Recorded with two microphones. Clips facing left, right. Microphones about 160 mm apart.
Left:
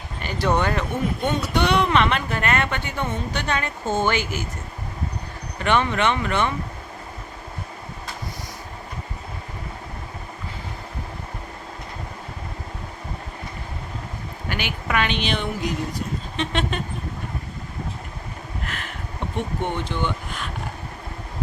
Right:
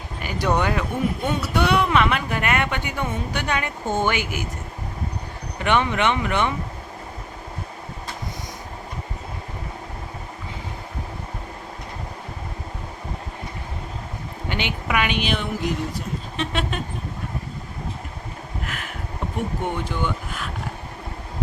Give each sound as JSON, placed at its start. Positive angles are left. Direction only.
{"t": 0.2, "sound": "speech", "side_deg": -10}
{"t": 5.5, "sound": "speech", "side_deg": -15}
{"t": 14.4, "sound": "a sound", "side_deg": -20}
{"t": 14.8, "sound": "speech", "side_deg": -10}
{"t": 18.6, "sound": "a sound", "side_deg": -5}
{"t": 19.6, "sound": "speech", "side_deg": -5}